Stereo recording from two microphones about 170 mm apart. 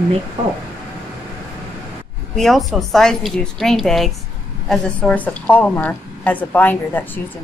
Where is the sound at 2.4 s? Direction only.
Centre (ahead or behind).